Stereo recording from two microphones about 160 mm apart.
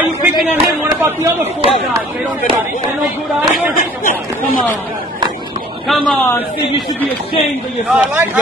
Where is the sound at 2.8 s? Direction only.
Centre (ahead or behind).